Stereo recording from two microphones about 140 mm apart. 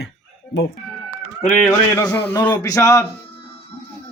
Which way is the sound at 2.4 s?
15° left (ahead or behind).